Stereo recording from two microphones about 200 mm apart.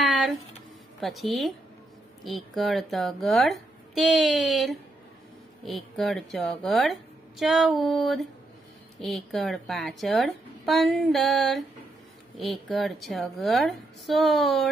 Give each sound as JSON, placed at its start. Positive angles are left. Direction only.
{"t": 0.0, "sound": "a sound", "side_deg": 0}
{"t": 1.0, "sound": "speech", "side_deg": 0}
{"t": 5.9, "sound": "speech", "side_deg": 0}